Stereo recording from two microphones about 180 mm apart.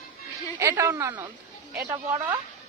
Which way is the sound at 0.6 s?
15° right (ahead or behind).